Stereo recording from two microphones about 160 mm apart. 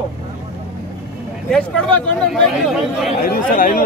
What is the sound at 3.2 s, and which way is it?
Speech, 65° left (ahead or behind).